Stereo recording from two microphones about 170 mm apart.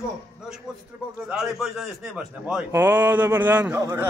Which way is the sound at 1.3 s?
Centre (ahead or behind).